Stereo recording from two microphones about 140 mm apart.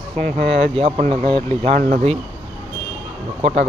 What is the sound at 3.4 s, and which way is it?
Speech, 55° right (ahead or behind).